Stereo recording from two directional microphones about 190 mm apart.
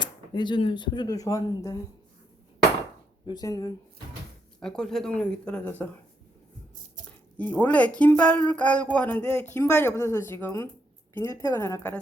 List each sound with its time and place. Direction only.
0.0 s speech: 25° left (ahead or behind)
3.2 s speech: 20° left (ahead or behind)
4.6 s speech: 5° left (ahead or behind)
7.6 s speech: 5° left (ahead or behind)